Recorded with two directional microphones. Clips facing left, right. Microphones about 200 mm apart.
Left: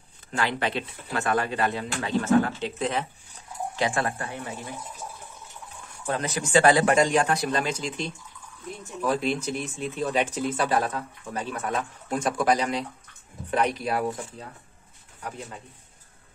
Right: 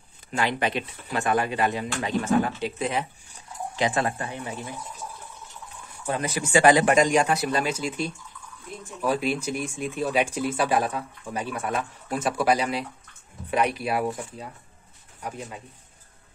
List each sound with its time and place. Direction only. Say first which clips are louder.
0.4 s speech: right 1 dB; 15° right (ahead or behind)
6.0 s speech: right 1 dB; 10° right (ahead or behind)
15.2 s speech: right 2 dB; 10° right (ahead or behind)